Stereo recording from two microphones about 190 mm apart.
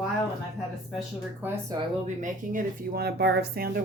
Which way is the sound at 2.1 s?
45° right (ahead or behind).